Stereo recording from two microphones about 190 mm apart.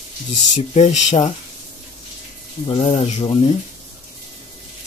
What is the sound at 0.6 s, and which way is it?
Speech, 35° left (ahead or behind).